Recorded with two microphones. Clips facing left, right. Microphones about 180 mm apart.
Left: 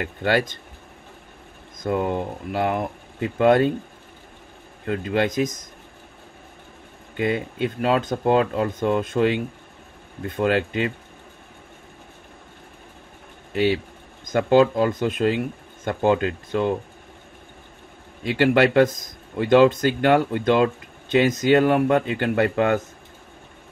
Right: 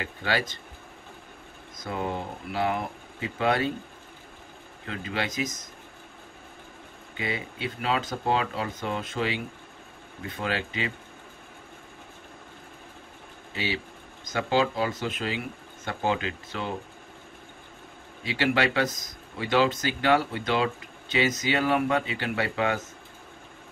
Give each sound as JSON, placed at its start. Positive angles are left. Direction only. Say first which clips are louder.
{"t": 0.0, "sound": "speech", "louder": "left 7 dB", "side_deg": 55}
{"t": 1.9, "sound": "speech", "louder": "left 8 dB", "side_deg": 50}
{"t": 4.8, "sound": "speech", "louder": "left 9 dB", "side_deg": 50}
{"t": 7.2, "sound": "speech", "louder": "left 10 dB", "side_deg": 50}
{"t": 14.3, "sound": "speech", "louder": "left 8 dB", "side_deg": 50}
{"t": 18.2, "sound": "speech", "louder": "left 7 dB", "side_deg": 55}